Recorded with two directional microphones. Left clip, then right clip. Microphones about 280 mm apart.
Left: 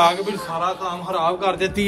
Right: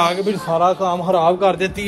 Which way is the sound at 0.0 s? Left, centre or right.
Centre.